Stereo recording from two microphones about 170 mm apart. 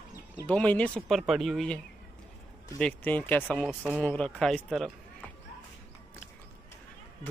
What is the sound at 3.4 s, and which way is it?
Speech, centre (ahead or behind).